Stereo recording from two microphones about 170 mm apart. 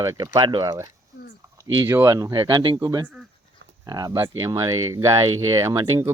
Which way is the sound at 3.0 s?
5° right (ahead or behind).